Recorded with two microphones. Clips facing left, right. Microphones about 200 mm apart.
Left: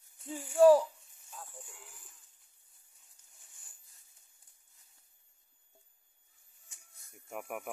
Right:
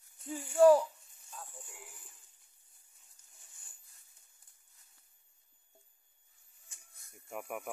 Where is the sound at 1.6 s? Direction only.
5° right (ahead or behind).